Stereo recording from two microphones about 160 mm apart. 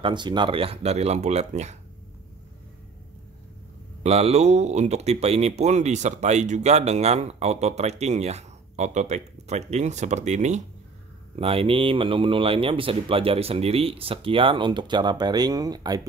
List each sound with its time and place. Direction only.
0.0 s speech: 30° right (ahead or behind); by 1.8 s 45° right (ahead or behind)
4.0 s speech: 40° right (ahead or behind)
11.3 s speech: 35° right (ahead or behind)